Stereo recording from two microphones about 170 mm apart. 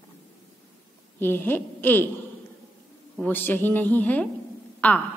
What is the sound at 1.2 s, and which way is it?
Speech, 10° left (ahead or behind).